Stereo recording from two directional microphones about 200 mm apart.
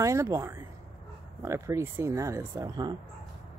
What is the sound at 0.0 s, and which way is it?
Speech, 15° right (ahead or behind).